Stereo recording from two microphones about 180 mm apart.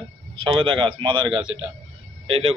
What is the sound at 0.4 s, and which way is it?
A man's voice, 30° right (ahead or behind).